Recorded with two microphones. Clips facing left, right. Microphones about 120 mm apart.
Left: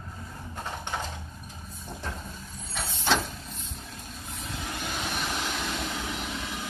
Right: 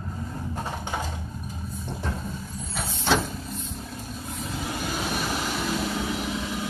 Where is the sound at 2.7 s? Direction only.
Centre (ahead or behind).